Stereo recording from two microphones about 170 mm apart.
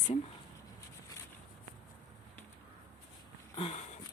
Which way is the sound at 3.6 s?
35° left (ahead or behind).